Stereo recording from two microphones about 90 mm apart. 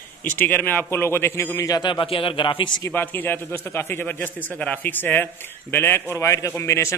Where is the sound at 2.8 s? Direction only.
25° left (ahead or behind).